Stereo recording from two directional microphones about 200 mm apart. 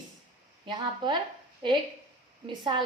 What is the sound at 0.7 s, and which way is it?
Speech, 25° right (ahead or behind).